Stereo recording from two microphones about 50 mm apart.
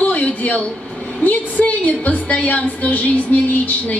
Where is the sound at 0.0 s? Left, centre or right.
Left.